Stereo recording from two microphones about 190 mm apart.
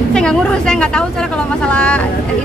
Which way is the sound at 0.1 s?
5° left (ahead or behind).